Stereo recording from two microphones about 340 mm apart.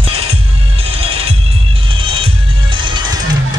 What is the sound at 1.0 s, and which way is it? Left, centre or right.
Music, centre.